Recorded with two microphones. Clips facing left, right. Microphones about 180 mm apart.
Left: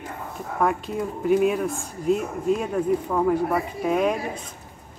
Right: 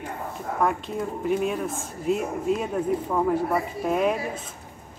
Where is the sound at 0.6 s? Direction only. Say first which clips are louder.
Left 2 dB; centre (ahead or behind).